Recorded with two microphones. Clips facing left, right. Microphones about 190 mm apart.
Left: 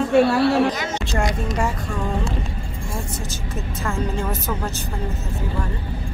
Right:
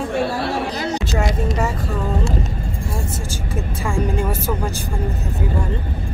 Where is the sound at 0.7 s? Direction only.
35° right (ahead or behind).